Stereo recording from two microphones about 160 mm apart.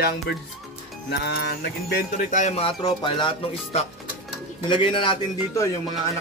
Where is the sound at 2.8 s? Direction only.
30° left (ahead or behind).